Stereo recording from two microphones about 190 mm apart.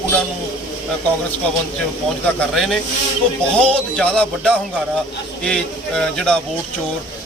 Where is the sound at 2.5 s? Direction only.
Centre (ahead or behind).